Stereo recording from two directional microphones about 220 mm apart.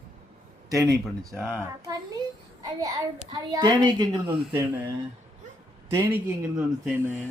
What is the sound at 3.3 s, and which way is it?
A child's voice, 20° right (ahead or behind).